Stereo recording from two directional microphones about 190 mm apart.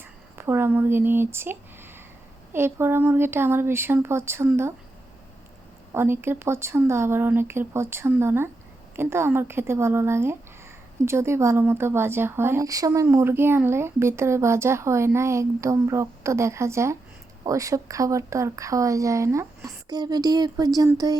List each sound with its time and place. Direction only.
0.3 s speech: 10° right (ahead or behind)
5.9 s speech: 10° right (ahead or behind)